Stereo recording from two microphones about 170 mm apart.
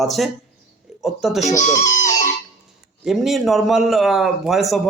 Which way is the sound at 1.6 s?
50° left (ahead or behind).